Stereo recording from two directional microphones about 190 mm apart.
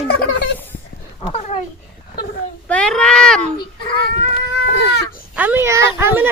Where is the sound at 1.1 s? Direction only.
30° left (ahead or behind).